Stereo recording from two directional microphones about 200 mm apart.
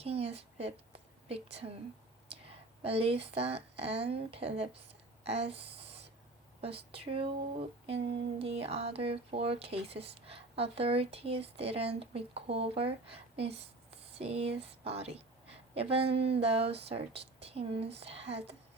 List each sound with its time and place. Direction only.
0.0 s a woman's voice: 30° right (ahead or behind)
2.8 s speech: 30° right (ahead or behind)